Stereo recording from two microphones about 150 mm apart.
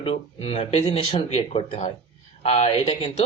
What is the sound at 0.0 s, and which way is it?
A woman's voice, 40° left (ahead or behind).